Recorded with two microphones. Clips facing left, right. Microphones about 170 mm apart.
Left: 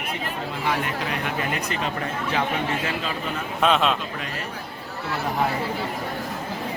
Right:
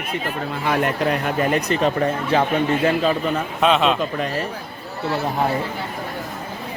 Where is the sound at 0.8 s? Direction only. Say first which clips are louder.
Right 7 dB; 45° right (ahead or behind).